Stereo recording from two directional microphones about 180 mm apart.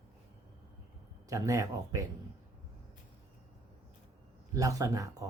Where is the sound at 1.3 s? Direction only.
20° right (ahead or behind).